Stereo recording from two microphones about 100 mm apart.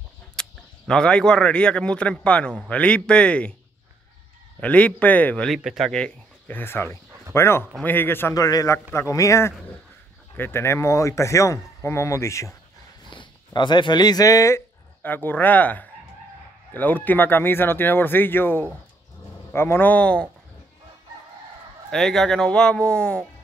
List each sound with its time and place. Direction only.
0.4 s speech: 5° left (ahead or behind)
4.6 s speech: 15° left (ahead or behind)
5.5 s speech: centre (ahead or behind)
6.4 s speech: 20° left (ahead or behind)
8.4 s speech: 35° left (ahead or behind)
13.1 s speech: 55° left (ahead or behind); by 14.6 s 35° left (ahead or behind)
15.0 s speech: 20° left (ahead or behind)
21.9 s speech: 5° left (ahead or behind)